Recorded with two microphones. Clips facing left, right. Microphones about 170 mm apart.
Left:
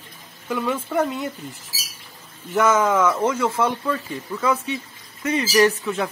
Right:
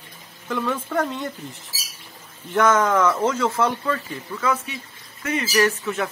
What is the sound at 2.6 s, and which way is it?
Speech, 5° left (ahead or behind).